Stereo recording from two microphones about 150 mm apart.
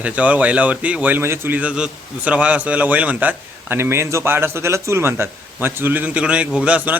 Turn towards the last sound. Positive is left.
turn(degrees=-10)  # may be behind; listen again after turning